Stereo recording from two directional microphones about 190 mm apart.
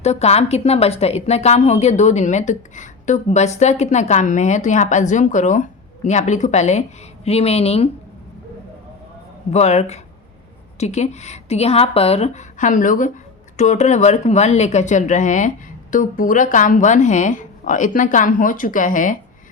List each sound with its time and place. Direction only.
0.0 s a woman's voice: 35° left (ahead or behind)
9.5 s a woman's voice: 35° left (ahead or behind)